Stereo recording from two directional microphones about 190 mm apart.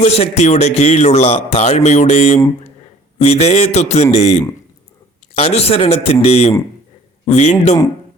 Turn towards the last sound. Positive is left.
turn(degrees=35)  # may be behind; listen again after turning